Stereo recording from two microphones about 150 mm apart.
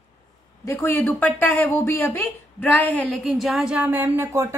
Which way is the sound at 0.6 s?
20° left (ahead or behind).